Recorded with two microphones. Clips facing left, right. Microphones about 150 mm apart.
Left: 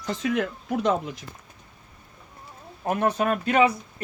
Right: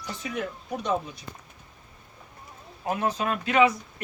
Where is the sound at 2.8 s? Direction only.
55° left (ahead or behind).